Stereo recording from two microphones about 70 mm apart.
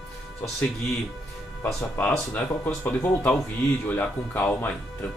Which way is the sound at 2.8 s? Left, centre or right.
Left.